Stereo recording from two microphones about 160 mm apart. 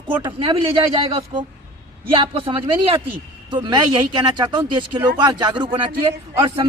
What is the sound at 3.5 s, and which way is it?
A man's voice, 25° right (ahead or behind).